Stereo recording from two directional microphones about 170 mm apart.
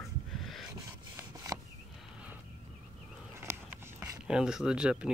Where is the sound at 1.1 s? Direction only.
20° right (ahead or behind).